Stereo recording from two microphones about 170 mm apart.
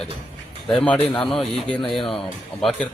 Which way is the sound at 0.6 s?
5° left (ahead or behind).